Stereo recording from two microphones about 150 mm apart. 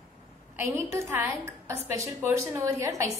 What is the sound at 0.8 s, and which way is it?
A woman's voice, 20° right (ahead or behind).